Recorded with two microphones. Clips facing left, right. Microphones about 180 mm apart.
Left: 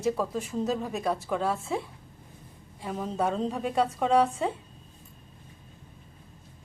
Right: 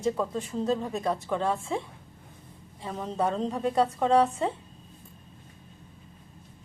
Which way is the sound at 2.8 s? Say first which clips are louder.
Even; centre (ahead or behind).